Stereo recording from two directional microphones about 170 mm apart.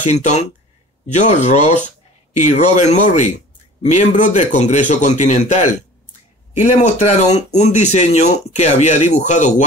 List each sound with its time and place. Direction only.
0.0 s speech: 45° left (ahead or behind)